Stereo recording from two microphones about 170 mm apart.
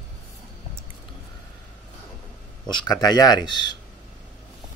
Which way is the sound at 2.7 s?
25° left (ahead or behind).